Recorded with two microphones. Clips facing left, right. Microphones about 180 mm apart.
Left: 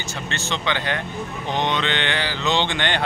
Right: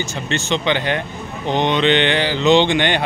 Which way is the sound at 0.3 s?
20° right (ahead or behind).